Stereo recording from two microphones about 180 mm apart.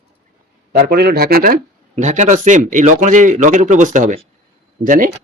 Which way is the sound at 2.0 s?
40° right (ahead or behind).